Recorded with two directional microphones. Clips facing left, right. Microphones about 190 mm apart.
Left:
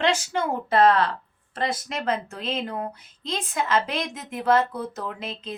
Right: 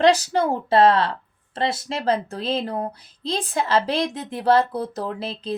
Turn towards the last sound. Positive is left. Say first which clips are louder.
# right 5 dB
turn(degrees=-35)  # may be behind; listen again after turning